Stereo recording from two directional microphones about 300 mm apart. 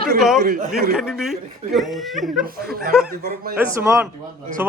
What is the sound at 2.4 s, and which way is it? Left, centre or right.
Speech, right.